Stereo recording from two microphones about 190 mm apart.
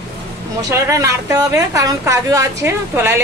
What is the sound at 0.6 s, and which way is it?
A woman's voice, 15° right (ahead or behind).